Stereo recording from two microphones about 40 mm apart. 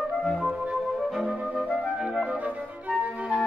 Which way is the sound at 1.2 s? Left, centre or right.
Right.